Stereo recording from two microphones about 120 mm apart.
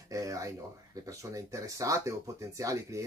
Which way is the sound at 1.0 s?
25° right (ahead or behind).